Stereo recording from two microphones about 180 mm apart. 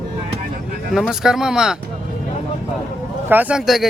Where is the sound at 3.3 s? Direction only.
10° right (ahead or behind).